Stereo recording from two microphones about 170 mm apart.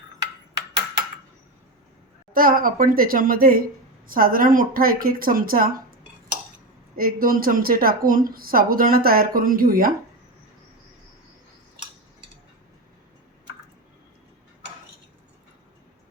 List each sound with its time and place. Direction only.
2.3 s speech: 55° right (ahead or behind)
6.9 s speech: 60° right (ahead or behind)